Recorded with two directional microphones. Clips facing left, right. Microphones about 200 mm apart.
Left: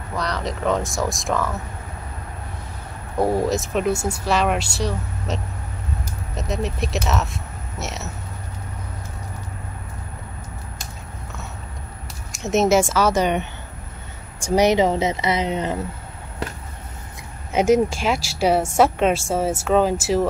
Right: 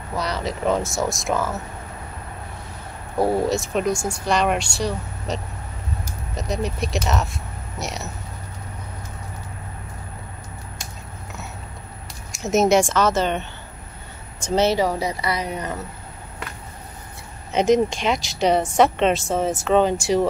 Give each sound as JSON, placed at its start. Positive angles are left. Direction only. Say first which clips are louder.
{"t": 0.1, "sound": "speech", "louder": "even", "side_deg": 0}
{"t": 3.2, "sound": "speech", "louder": "even", "side_deg": 0}
{"t": 12.3, "sound": "speech", "louder": "even", "side_deg": 0}
{"t": 17.5, "sound": "speech", "louder": "left 1 dB", "side_deg": 10}